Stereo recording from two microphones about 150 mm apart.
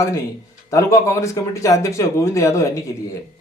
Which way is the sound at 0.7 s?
20° left (ahead or behind).